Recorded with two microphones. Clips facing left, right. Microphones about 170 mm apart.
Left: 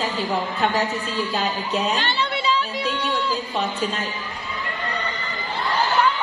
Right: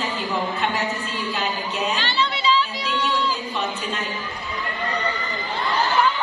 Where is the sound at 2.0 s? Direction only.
55° left (ahead or behind).